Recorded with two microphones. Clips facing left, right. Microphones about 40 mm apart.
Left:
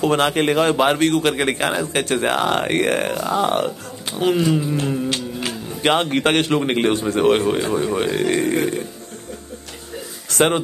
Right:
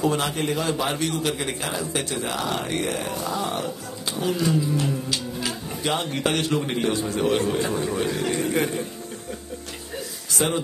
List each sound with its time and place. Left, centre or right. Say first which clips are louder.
0.0 s a man's voice: left 6 dB; left
4.5 s a sound: left 3 dB; left
5.1 s speech: left 3 dB; left
7.6 s speech: left 5 dB; left
10.3 s speech: left 7 dB; left